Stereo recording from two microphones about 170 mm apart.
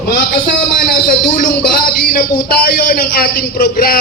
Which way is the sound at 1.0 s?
55° left (ahead or behind).